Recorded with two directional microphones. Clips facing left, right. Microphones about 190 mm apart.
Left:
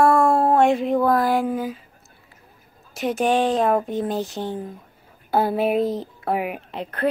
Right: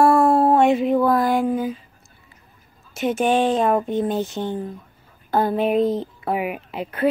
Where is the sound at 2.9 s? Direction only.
Centre (ahead or behind).